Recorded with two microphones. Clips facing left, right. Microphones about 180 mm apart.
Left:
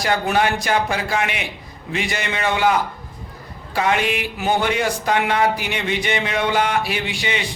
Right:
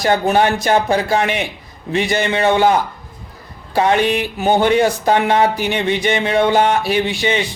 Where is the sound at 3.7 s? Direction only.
35° right (ahead or behind).